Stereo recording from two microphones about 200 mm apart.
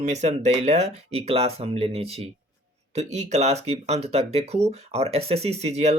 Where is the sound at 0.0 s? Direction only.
35° right (ahead or behind).